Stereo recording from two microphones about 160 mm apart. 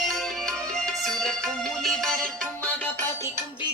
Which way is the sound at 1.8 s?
Centre (ahead or behind).